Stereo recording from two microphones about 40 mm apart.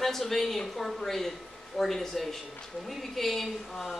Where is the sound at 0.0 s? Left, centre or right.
Centre.